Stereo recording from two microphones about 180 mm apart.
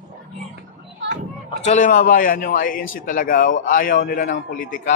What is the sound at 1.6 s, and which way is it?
A man's voice, 45° left (ahead or behind).